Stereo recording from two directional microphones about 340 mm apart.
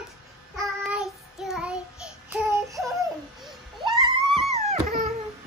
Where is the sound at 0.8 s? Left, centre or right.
Centre.